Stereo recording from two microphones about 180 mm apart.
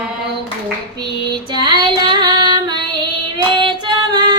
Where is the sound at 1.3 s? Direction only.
25° right (ahead or behind).